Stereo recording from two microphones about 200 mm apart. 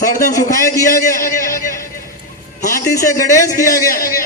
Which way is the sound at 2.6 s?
45° left (ahead or behind).